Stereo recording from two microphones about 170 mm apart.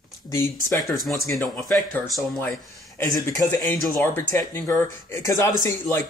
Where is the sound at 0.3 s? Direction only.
15° left (ahead or behind).